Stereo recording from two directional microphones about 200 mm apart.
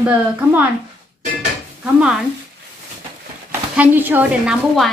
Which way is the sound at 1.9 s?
5° right (ahead or behind).